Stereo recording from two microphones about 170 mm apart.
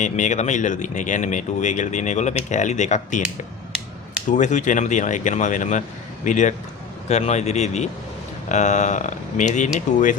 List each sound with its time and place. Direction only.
0.0 s speech: 45° left (ahead or behind)
4.3 s speech: 45° left (ahead or behind)